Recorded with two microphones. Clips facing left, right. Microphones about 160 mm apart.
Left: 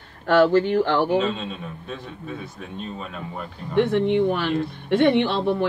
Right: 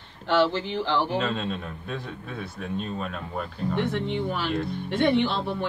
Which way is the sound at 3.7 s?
60° left (ahead or behind).